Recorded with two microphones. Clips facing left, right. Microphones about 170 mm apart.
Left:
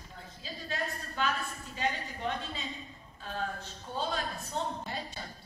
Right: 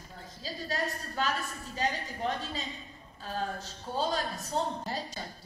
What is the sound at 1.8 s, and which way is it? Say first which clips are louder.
Speech: right 2 dB; 40° right (ahead or behind).